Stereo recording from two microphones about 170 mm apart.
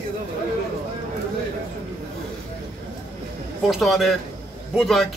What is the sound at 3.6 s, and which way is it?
A man's voice, centre (ahead or behind).